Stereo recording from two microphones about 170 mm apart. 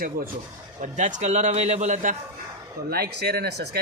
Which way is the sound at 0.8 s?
45° right (ahead or behind).